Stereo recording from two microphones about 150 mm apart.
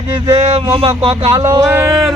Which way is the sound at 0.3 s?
40° right (ahead or behind).